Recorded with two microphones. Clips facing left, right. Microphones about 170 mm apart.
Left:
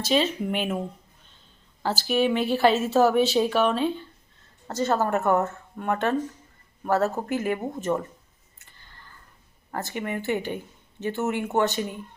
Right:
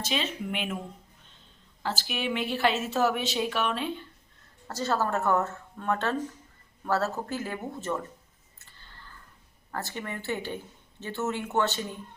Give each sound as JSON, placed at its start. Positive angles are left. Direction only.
{"t": 0.0, "sound": "speech", "side_deg": 40}
{"t": 1.8, "sound": "speech", "side_deg": 40}
{"t": 4.7, "sound": "a woman's voice", "side_deg": 20}
{"t": 9.7, "sound": "a woman's voice", "side_deg": 20}